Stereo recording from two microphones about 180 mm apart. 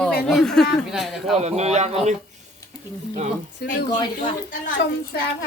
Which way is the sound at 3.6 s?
55° left (ahead or behind).